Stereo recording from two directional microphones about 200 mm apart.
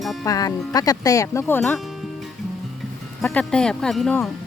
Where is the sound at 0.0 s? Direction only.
Centre (ahead or behind).